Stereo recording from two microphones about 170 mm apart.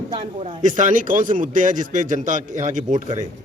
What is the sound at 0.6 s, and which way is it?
Speech, 45° right (ahead or behind).